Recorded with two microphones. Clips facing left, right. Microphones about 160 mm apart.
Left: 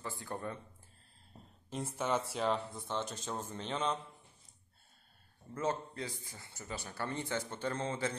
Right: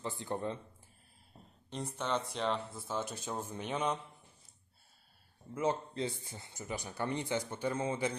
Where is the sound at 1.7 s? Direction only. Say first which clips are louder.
Left 1 dB; 5° left (ahead or behind); by 3.9 s 10° right (ahead or behind).